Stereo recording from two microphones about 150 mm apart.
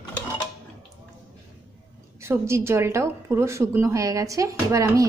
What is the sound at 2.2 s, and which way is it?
A woman's voice, 20° right (ahead or behind).